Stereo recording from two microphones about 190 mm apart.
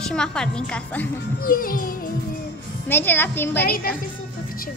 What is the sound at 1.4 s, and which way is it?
Speech, 50° left (ahead or behind).